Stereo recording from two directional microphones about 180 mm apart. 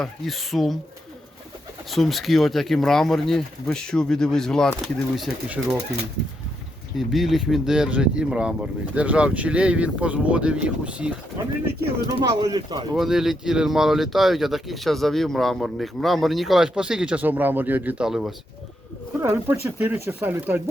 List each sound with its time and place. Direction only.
0.0 s speech: centre (ahead or behind)
1.9 s speech: centre (ahead or behind)
6.9 s speech: centre (ahead or behind)
12.2 s speech: 20° right (ahead or behind)
13.0 s speech: centre (ahead or behind)
19.2 s speech: 15° right (ahead or behind)